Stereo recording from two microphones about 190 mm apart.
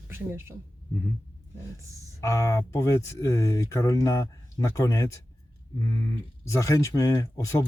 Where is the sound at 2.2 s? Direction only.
15° left (ahead or behind).